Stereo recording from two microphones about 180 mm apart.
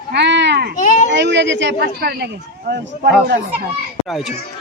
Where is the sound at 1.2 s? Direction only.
80° right.